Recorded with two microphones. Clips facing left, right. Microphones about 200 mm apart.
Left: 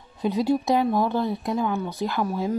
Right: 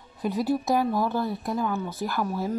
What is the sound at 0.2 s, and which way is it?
A woman's voice, 20° left (ahead or behind).